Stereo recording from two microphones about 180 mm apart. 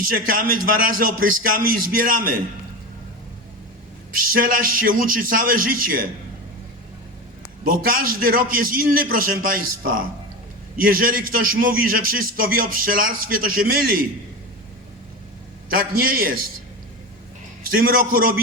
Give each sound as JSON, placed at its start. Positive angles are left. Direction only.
{"t": 0.1, "sound": "a man's voice", "side_deg": -50}
{"t": 4.3, "sound": "a man's voice", "side_deg": -55}
{"t": 7.6, "sound": "a man's voice", "side_deg": -50}
{"t": 15.7, "sound": "a man's voice", "side_deg": -55}
{"t": 17.7, "sound": "a man's voice", "side_deg": -55}